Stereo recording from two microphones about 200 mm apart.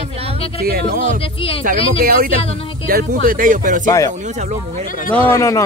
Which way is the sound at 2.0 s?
50° right (ahead or behind).